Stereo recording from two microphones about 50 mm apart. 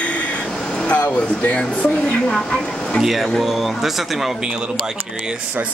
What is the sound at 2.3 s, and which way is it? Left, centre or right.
Speech, centre.